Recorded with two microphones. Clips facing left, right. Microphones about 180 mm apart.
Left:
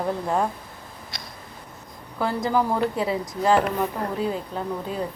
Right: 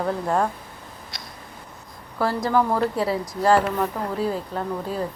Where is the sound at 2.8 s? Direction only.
30° right (ahead or behind).